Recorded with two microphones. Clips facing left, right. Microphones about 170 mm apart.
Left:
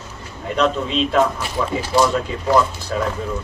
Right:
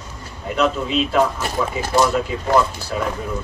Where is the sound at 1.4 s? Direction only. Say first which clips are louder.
Even; 45° right (ahead or behind).